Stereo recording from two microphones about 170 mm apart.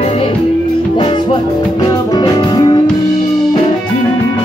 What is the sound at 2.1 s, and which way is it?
Music, 25° left (ahead or behind).